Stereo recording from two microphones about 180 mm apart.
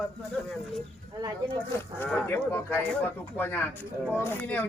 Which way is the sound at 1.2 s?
25° right (ahead or behind).